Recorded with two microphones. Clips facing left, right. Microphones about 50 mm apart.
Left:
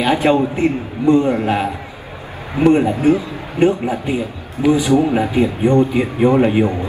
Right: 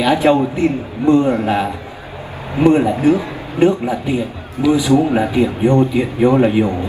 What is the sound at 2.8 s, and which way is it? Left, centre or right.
Speech, right.